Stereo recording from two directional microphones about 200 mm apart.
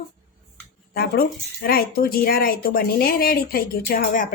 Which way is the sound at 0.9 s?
50° left (ahead or behind).